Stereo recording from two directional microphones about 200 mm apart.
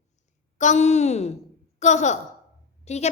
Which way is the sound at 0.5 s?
35° left (ahead or behind).